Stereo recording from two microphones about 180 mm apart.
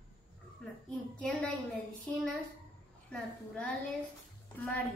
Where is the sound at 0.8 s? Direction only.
5° left (ahead or behind).